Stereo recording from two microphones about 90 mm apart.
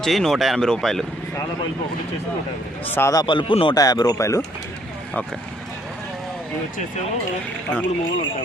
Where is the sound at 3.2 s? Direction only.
65° left (ahead or behind).